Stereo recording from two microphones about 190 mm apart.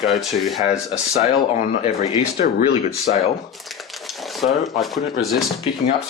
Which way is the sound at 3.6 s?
Centre (ahead or behind).